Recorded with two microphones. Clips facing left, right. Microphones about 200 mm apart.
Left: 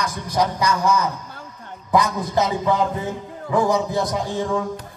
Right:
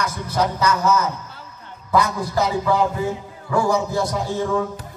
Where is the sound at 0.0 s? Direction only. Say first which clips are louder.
Even; 15° left (ahead or behind).